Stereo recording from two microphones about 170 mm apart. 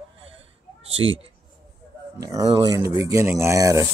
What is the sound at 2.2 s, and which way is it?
Speech, 20° right (ahead or behind).